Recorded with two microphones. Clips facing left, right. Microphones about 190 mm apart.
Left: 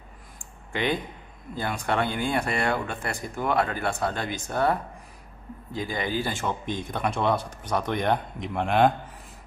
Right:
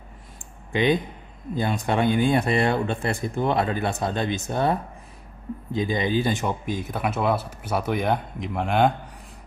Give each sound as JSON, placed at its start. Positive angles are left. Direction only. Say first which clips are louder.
{"t": 0.7, "sound": "speech", "louder": "right 6 dB", "side_deg": -20}
{"t": 6.6, "sound": "speech", "louder": "right 2 dB", "side_deg": -5}